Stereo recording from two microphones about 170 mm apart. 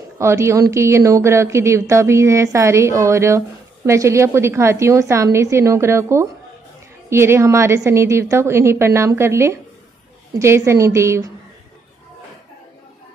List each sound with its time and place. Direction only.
0.2 s a woman's voice: 15° right (ahead or behind)